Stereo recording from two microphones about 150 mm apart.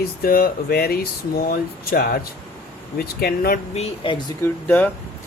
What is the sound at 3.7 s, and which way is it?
Speech, 40° left (ahead or behind).